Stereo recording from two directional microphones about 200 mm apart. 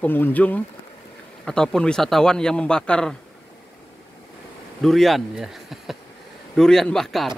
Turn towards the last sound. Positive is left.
turn(degrees=0)  # may be behind; listen again after turning